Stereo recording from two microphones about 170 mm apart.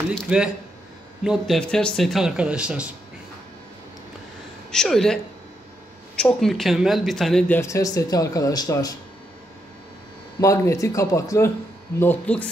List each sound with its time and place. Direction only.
0.1 s speech: 5° right (ahead or behind)
4.6 s speech: 5° left (ahead or behind); by 8.9 s 20° left (ahead or behind)
10.4 s speech: 15° left (ahead or behind)